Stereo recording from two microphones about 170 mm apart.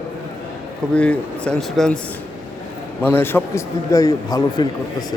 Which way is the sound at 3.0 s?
15° left (ahead or behind).